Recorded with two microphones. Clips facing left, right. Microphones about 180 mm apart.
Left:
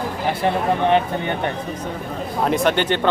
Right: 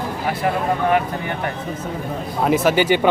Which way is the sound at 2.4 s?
5° right (ahead or behind).